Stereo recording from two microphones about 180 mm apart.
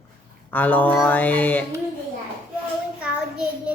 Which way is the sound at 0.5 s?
10° left (ahead or behind).